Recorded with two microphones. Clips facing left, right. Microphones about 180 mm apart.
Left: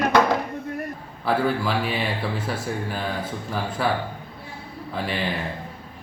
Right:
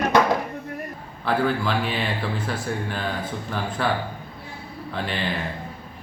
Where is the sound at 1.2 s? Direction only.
5° left (ahead or behind).